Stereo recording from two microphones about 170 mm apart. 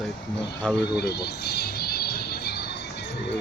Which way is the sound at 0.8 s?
75° left (ahead or behind).